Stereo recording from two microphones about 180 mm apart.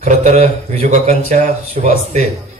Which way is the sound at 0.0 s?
35° right (ahead or behind).